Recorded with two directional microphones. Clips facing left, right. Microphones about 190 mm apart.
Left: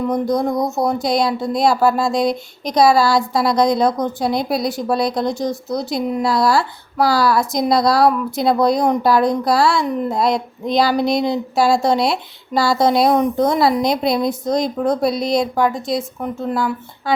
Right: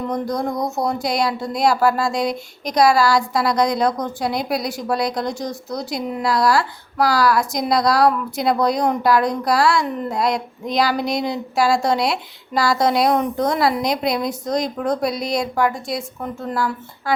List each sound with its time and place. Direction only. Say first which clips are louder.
0.9 s speech: left 3 dB; 20° left (ahead or behind)